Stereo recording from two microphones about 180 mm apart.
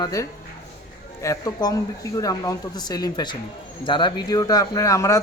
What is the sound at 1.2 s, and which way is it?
A man's voice, 20° left (ahead or behind).